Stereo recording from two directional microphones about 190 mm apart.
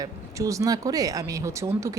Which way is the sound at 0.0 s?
15° right (ahead or behind).